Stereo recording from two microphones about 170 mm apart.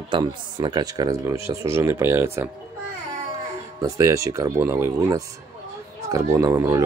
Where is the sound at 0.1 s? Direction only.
25° right (ahead or behind).